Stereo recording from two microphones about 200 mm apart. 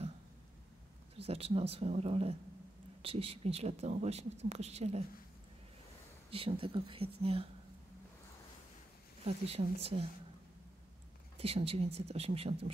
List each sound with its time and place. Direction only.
1.1 s speech: 30° right (ahead or behind)
6.3 s speech: 25° right (ahead or behind)
9.2 s speech: 30° right (ahead or behind)
11.3 s speech: 30° right (ahead or behind)